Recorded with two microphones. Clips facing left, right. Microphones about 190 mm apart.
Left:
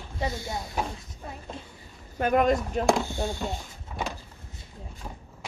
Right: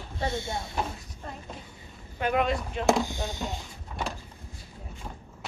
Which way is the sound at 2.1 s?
45° left (ahead or behind).